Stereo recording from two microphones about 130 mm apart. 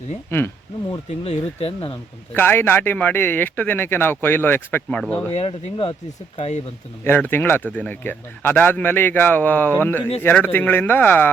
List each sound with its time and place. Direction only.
0.3 s a man's voice: 15° left (ahead or behind)
0.9 s speech: 50° left (ahead or behind)
2.3 s a man's voice: 15° left (ahead or behind)
5.3 s speech: 50° left (ahead or behind)
7.0 s a man's voice: 15° left (ahead or behind)